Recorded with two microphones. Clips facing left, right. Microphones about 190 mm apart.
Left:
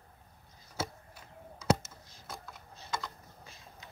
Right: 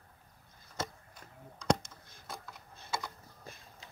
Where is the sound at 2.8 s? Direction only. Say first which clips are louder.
Even; 10° right (ahead or behind).